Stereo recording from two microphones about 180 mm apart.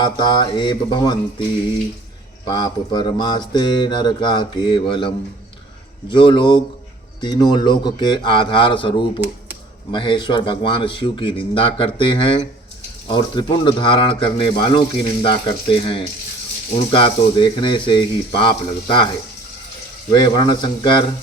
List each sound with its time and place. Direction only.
0.0 s speech: 25° left (ahead or behind)
2.4 s speech: 25° left (ahead or behind)
20.1 s speech: 25° left (ahead or behind)